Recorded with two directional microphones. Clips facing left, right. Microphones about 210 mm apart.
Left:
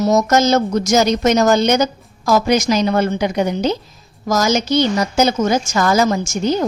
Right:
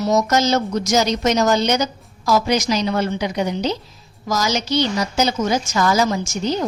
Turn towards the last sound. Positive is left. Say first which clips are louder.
# left 4 dB
turn(degrees=50)  # may be behind; listen again after turning